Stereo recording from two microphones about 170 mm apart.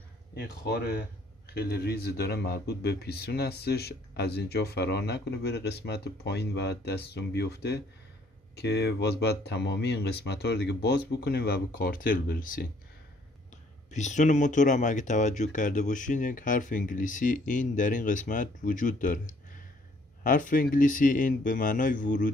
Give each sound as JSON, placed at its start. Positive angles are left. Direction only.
{"t": 0.4, "sound": "speech", "side_deg": 70}
{"t": 13.8, "sound": "speech", "side_deg": 45}